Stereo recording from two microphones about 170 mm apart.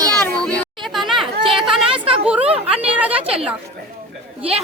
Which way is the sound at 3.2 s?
35° right (ahead or behind).